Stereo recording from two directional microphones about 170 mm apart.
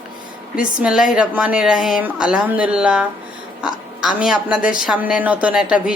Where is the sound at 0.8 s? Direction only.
5° right (ahead or behind).